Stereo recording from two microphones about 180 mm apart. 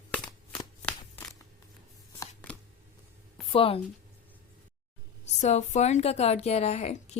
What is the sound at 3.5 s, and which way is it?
Speech, 30° left (ahead or behind).